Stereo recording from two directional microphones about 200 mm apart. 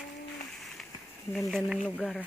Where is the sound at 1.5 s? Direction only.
Centre (ahead or behind).